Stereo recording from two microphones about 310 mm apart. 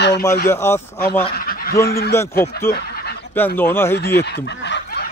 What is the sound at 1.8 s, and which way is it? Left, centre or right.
Speech, left.